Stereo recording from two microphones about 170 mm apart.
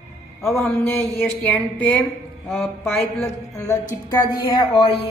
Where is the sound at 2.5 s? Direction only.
Centre (ahead or behind).